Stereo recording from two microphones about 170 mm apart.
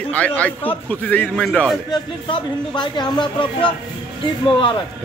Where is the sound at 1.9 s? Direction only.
25° left (ahead or behind).